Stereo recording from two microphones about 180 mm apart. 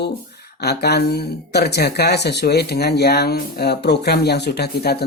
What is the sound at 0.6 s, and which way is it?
Speech, 65° left (ahead or behind).